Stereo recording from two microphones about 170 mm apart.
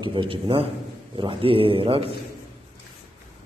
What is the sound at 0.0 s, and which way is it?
A man's voice, 30° right (ahead or behind).